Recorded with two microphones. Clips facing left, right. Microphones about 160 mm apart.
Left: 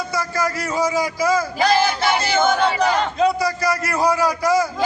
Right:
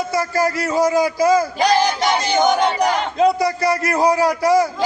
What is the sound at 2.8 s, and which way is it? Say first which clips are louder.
Crowd: right 2 dB; 25° right (ahead or behind).